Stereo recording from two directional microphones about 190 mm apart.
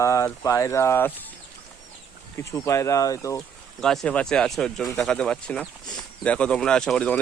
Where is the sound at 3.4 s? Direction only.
5° left (ahead or behind).